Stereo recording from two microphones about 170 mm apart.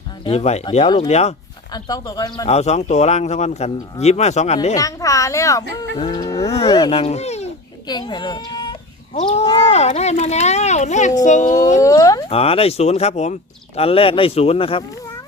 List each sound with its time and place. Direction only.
0.3 s a child's voice: 40° left (ahead or behind)
1.7 s a child's voice: 25° left (ahead or behind)
2.5 s a child's voice: 40° left (ahead or behind)
4.7 s a child's voice: 20° left (ahead or behind)
6.4 s a child's voice: 35° left (ahead or behind)
7.9 s a child's voice: 25° left (ahead or behind); by 11.8 s 45° left (ahead or behind)
11.8 s a child's voice: 20° left (ahead or behind)
12.3 s a child's voice: 35° left (ahead or behind)